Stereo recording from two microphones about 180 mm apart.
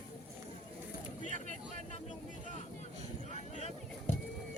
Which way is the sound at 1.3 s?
45° right (ahead or behind).